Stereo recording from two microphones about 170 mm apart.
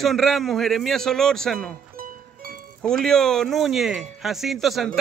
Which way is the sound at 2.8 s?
5° left (ahead or behind).